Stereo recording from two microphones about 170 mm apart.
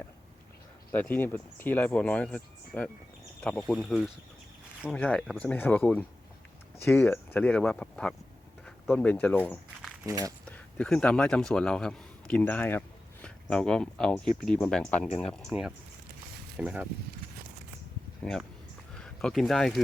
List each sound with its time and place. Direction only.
0.9 s speech: 10° left (ahead or behind)
10.1 s speech: 20° right (ahead or behind)
10.5 s a man's voice: 5° left (ahead or behind)
18.2 s speech: 5° left (ahead or behind)